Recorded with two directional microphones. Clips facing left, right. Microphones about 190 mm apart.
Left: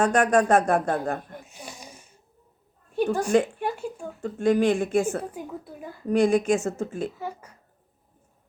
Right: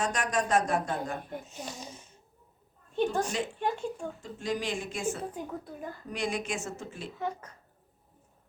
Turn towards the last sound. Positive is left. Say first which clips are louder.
# even
turn(degrees=10)  # may be behind; listen again after turning